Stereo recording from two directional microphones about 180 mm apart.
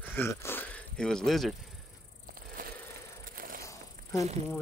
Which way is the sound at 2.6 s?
50° right (ahead or behind).